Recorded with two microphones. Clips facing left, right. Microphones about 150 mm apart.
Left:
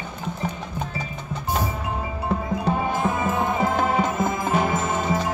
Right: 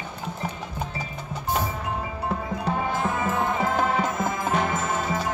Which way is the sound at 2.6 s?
10° left (ahead or behind).